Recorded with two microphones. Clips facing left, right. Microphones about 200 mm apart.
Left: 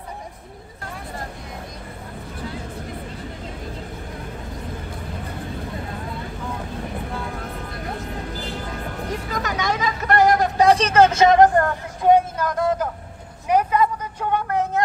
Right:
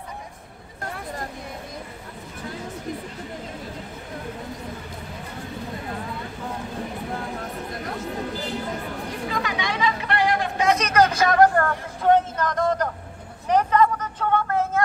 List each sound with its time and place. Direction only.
9.3 s vehicle: 45° left (ahead or behind); by 14.8 s 15° left (ahead or behind)